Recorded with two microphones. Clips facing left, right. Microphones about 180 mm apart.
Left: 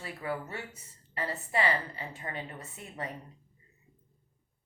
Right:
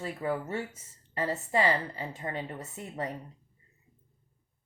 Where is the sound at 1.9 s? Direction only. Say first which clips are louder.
Right 4 dB; 20° right (ahead or behind).